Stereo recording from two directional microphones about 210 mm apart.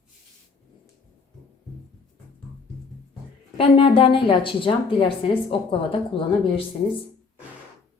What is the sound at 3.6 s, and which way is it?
A woman's voice, 25° left (ahead or behind).